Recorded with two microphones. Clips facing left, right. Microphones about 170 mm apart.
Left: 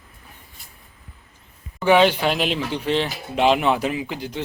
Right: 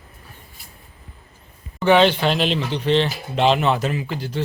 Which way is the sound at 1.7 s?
10° left (ahead or behind).